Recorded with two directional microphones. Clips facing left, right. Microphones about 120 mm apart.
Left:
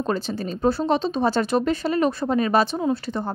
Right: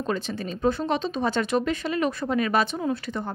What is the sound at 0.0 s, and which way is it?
Speech, 35° left (ahead or behind).